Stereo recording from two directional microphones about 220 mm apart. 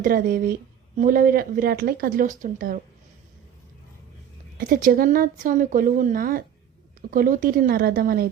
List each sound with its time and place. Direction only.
0.0 s speech: 40° right (ahead or behind)
4.5 s speech: 40° right (ahead or behind)